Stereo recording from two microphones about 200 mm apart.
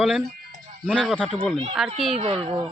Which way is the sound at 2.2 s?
30° right (ahead or behind).